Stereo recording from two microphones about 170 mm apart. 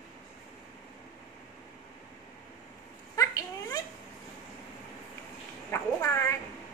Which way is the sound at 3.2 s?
20° left (ahead or behind).